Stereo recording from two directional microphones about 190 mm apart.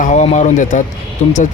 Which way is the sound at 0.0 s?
40° left (ahead or behind).